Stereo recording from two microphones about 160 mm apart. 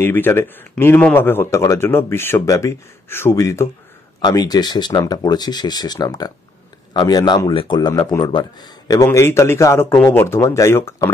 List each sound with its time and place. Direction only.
0.0 s speech: 15° left (ahead or behind)